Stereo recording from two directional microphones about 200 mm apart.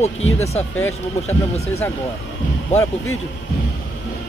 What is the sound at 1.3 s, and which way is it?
Speech, 30° left (ahead or behind).